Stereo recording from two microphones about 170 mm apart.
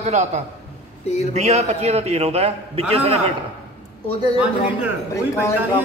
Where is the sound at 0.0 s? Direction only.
40° right (ahead or behind).